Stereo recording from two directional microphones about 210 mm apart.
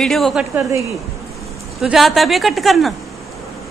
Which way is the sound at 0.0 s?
Centre (ahead or behind).